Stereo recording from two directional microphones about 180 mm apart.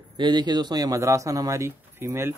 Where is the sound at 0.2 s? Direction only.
25° right (ahead or behind).